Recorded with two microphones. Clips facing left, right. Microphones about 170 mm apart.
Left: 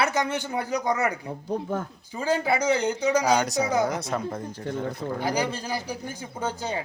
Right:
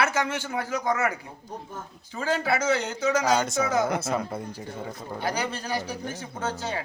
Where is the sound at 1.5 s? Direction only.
65° left (ahead or behind).